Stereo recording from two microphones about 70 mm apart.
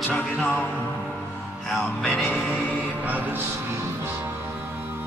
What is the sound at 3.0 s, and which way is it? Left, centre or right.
Music, right.